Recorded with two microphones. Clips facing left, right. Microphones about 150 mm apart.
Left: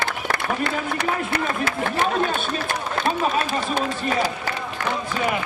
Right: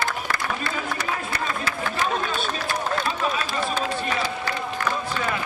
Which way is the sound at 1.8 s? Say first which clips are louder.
Left 4 dB; 50° left (ahead or behind).